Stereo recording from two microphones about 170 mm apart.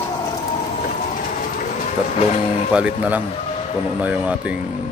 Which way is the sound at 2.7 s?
10° right (ahead or behind).